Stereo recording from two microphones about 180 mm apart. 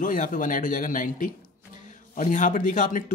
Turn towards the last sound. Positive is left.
turn(degrees=45)  # may be behind; listen again after turning